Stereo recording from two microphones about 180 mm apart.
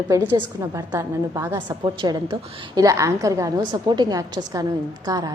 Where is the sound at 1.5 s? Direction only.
25° right (ahead or behind).